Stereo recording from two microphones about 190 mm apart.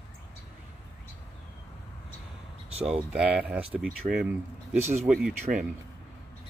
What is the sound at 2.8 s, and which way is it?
Speech, 5° right (ahead or behind).